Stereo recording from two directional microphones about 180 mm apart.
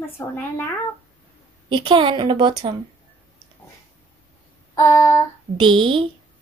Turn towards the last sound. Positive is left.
turn(degrees=-30)  # may be behind; listen again after turning